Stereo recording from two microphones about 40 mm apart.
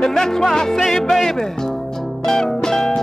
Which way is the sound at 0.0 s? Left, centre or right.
Centre.